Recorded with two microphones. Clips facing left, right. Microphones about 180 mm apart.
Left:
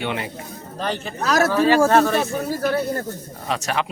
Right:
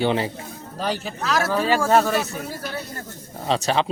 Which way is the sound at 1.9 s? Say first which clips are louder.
Left 1 dB; 10° right (ahead or behind).